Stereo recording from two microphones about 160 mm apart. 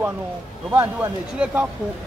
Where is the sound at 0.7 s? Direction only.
15° right (ahead or behind).